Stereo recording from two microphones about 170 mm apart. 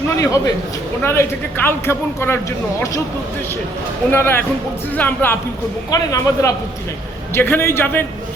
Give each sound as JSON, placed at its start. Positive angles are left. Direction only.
{"t": 0.2, "sound": "a man's voice", "side_deg": 20}
{"t": 4.1, "sound": "a man's voice", "side_deg": 10}